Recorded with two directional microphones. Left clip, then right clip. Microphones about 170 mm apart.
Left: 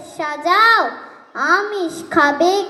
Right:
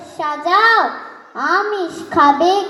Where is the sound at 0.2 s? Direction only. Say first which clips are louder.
Even; 30° left (ahead or behind).